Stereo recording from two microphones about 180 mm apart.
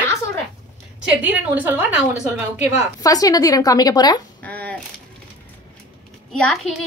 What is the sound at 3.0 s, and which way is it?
Speech, 20° left (ahead or behind).